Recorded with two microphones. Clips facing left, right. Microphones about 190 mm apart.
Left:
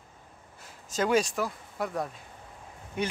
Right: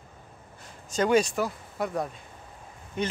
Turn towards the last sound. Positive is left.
turn(degrees=10)  # may be behind; listen again after turning